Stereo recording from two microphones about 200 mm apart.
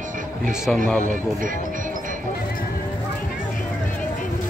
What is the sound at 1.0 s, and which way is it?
Speech, 40° right (ahead or behind).